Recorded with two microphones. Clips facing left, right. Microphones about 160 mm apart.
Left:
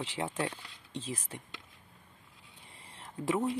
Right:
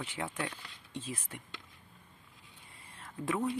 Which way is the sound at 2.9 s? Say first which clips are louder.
Left 3 dB; 20° left (ahead or behind).